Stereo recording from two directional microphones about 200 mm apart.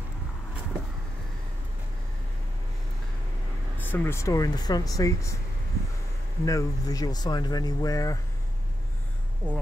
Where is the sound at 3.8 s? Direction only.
10° left (ahead or behind).